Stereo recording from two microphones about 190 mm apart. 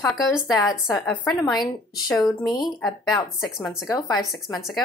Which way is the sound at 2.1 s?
Centre (ahead or behind).